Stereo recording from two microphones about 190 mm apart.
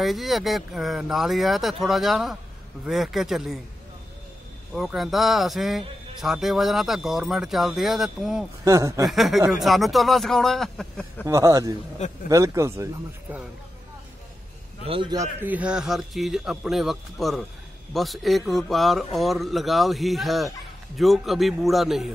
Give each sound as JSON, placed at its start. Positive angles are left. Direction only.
{"t": 0.0, "sound": "a man's voice", "side_deg": 0}
{"t": 4.7, "sound": "a man's voice", "side_deg": 0}
{"t": 8.6, "sound": "speech", "side_deg": -15}
{"t": 9.1, "sound": "a man's voice", "side_deg": 0}
{"t": 11.2, "sound": "speech", "side_deg": -15}
{"t": 14.9, "sound": "a man's voice", "side_deg": -25}
{"t": 15.4, "sound": "a man's voice", "side_deg": -5}